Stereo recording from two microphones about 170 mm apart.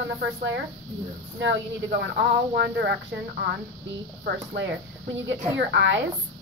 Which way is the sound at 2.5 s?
80° right.